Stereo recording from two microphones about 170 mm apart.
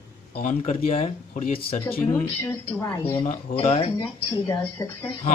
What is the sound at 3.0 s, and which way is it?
Speech, 35° left (ahead or behind).